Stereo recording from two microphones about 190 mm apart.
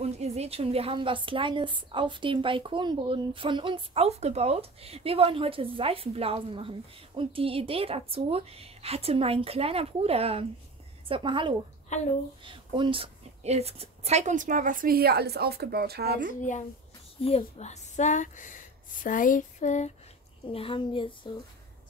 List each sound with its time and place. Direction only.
0.0 s a woman's voice: 35° right (ahead or behind); by 16.3 s 50° right (ahead or behind)
17.2 s speech: 30° left (ahead or behind)
20.5 s a child's voice: 30° left (ahead or behind)